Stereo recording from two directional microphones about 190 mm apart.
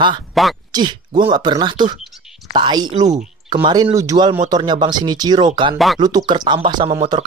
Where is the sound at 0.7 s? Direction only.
20° right (ahead or behind).